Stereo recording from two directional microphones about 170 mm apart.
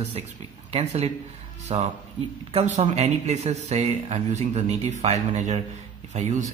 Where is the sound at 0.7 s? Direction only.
35° right (ahead or behind).